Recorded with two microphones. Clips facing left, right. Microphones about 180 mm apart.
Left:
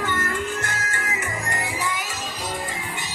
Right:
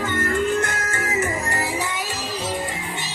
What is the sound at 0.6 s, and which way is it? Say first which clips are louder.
Music: right 5 dB; 45° right (ahead or behind).